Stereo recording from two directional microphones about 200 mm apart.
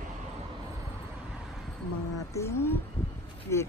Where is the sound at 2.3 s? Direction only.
10° left (ahead or behind).